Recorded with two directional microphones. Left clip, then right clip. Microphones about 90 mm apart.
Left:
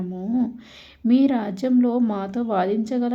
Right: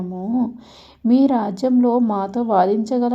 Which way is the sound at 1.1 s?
20° right (ahead or behind).